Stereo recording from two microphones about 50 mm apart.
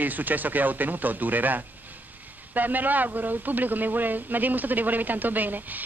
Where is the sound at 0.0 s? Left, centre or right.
Right.